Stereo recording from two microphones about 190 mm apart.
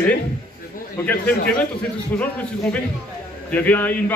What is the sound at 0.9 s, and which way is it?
A man's voice, 10° left (ahead or behind).